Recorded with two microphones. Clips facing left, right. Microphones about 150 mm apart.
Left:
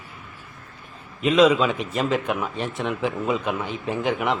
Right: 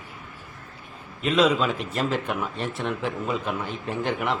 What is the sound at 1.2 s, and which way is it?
Speech, centre (ahead or behind).